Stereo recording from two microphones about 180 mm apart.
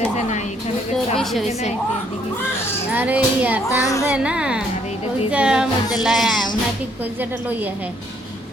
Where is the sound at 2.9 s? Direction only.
10° right (ahead or behind).